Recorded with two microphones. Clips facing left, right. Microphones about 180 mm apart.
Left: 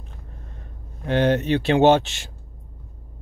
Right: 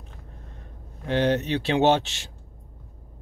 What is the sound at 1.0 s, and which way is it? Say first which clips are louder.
Speech: left 3 dB; 55° left (ahead or behind).